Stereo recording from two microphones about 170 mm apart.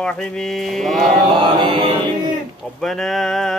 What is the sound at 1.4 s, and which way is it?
Mantra, 30° right (ahead or behind).